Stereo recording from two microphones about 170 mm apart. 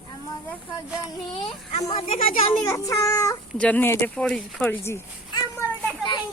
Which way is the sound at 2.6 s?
20° left (ahead or behind).